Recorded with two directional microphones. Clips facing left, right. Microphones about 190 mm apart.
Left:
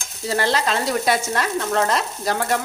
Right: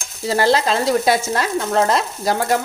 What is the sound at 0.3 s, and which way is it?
Frying, 35° right (ahead or behind).